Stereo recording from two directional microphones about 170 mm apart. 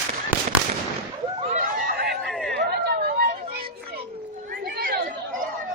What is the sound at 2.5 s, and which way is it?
Chatter, 65° right (ahead or behind).